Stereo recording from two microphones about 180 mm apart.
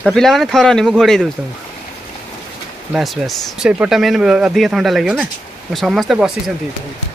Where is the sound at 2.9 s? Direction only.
Centre (ahead or behind).